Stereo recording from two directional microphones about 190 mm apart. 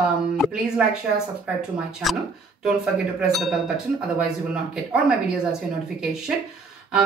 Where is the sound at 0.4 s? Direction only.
5° right (ahead or behind).